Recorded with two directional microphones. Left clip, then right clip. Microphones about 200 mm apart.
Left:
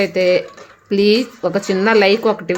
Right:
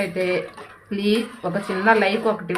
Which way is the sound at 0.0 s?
45° left (ahead or behind).